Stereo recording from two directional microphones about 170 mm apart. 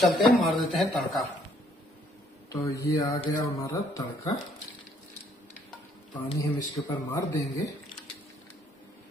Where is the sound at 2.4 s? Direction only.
20° left (ahead or behind).